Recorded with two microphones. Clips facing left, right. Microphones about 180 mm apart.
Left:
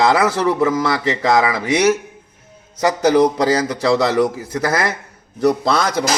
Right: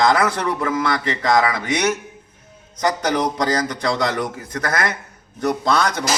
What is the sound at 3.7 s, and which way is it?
Speech, 5° left (ahead or behind).